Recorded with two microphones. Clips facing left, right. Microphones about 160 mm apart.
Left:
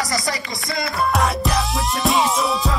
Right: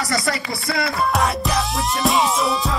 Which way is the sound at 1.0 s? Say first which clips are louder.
Left 3 dB; centre (ahead or behind).